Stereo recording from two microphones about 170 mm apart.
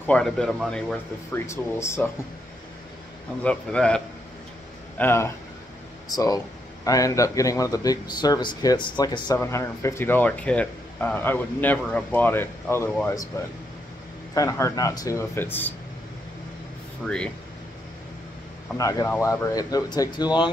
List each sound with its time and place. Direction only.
0.0 s speech: 5° left (ahead or behind)
1.3 s a man's voice: 15° left (ahead or behind)
3.4 s a man's voice: 5° left (ahead or behind)
17.0 s speech: 5° left (ahead or behind)
18.8 s speech: 20° left (ahead or behind)